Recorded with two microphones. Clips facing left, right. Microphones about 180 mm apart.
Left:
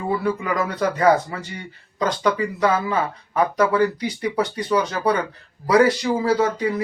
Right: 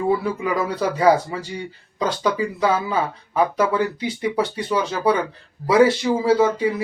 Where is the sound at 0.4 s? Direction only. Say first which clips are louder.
Right 1 dB; 10° right (ahead or behind).